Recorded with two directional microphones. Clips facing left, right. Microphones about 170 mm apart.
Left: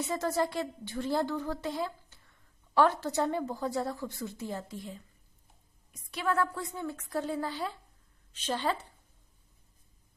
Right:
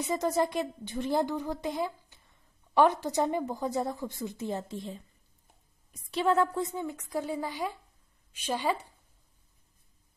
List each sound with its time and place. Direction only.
0.0 s a woman's voice: 15° right (ahead or behind)
6.0 s a woman's voice: 25° right (ahead or behind); by 8.8 s 10° right (ahead or behind)